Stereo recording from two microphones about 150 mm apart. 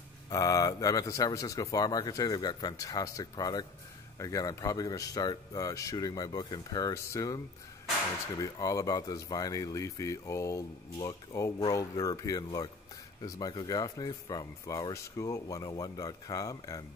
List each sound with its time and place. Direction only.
0.3 s speech: 25° left (ahead or behind)